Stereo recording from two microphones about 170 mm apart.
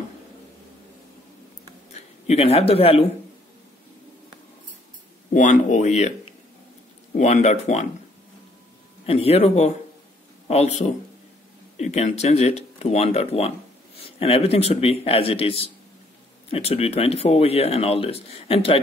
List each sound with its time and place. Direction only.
2.2 s speech: 35° left (ahead or behind)
5.3 s speech: 45° left (ahead or behind)
7.2 s speech: 40° left (ahead or behind)
9.0 s speech: 35° left (ahead or behind)